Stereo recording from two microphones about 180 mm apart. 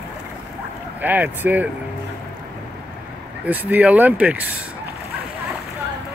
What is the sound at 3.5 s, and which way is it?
Speech, 10° right (ahead or behind).